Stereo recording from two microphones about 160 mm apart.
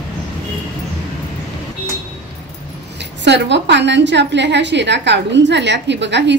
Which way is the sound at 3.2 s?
90° right.